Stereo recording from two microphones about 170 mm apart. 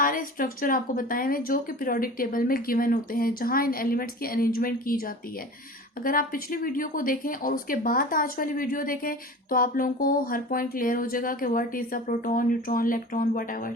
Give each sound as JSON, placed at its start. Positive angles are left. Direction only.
{"t": 0.0, "sound": "speech", "side_deg": 55}